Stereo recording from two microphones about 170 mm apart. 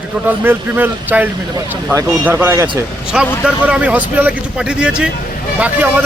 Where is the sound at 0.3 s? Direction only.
10° right (ahead or behind).